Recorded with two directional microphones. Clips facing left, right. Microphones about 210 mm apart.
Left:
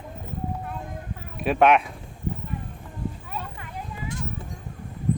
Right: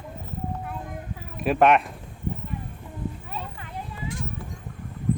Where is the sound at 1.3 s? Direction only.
Centre (ahead or behind).